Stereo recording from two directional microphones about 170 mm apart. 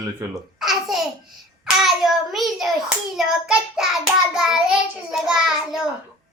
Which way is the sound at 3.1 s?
Centre (ahead or behind).